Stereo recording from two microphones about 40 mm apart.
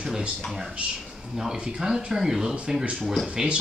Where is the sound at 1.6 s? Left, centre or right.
Centre.